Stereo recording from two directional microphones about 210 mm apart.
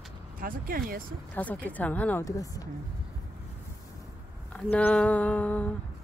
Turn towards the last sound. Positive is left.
turn(degrees=5)  # may be behind; listen again after turning